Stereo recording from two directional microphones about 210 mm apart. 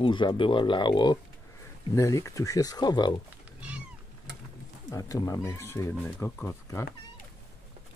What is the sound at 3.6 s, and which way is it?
Cat, 5° right (ahead or behind).